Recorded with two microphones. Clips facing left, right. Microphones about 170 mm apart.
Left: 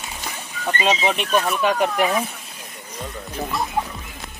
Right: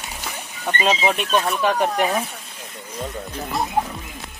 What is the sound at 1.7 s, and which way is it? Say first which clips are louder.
Speech: even; 35° right (ahead or behind).